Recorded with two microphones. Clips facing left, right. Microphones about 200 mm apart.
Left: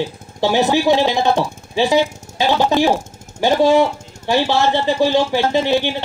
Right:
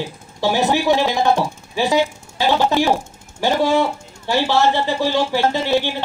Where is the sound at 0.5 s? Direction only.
25° left (ahead or behind).